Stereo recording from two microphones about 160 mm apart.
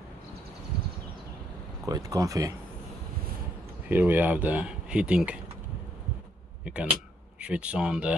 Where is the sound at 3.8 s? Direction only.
10° right (ahead or behind).